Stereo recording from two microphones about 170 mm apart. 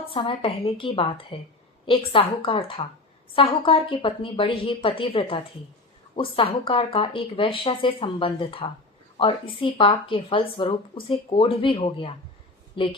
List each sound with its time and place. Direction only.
0.1 s a woman's voice: 30° left (ahead or behind)